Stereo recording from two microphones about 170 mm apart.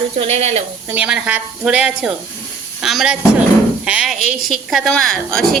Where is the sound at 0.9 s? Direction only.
5° right (ahead or behind).